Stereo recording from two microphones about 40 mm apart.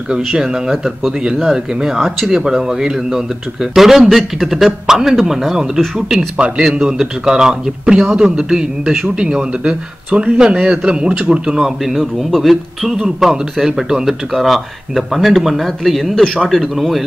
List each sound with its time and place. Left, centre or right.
0.3 s a man's voice: centre
11.8 s speech: centre
16.7 s speech: centre